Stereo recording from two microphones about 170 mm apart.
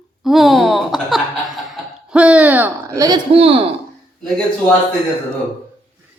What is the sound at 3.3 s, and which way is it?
Speech, 35° right (ahead or behind).